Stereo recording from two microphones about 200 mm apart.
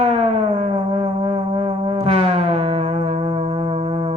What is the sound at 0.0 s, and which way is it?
Music, 30° right (ahead or behind).